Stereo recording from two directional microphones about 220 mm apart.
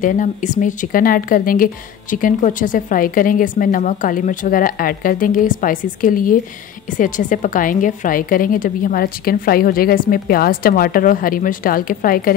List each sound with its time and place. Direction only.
0.0 s a woman's voice: 35° left (ahead or behind)